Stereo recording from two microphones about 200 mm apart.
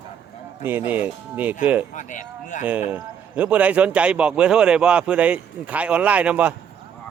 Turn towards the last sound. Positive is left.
turn(degrees=-5)  # may be behind; listen again after turning